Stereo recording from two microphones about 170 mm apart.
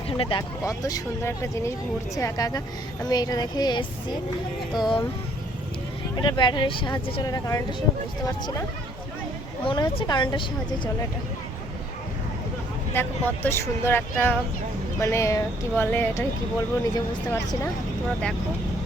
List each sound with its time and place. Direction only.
0.1 s speech: 30° left (ahead or behind)
6.1 s speech: 25° left (ahead or behind)
9.6 s speech: 25° left (ahead or behind)
12.9 s speech: 10° left (ahead or behind)